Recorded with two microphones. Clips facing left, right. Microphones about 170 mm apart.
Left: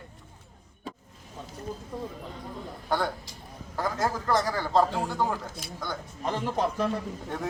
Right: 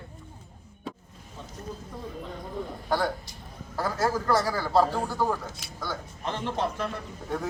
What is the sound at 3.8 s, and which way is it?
A man's voice, 15° left (ahead or behind).